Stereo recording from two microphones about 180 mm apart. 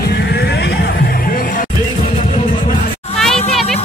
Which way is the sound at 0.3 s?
65° left (ahead or behind).